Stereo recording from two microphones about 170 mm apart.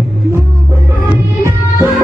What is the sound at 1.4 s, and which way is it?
Music, 15° right (ahead or behind).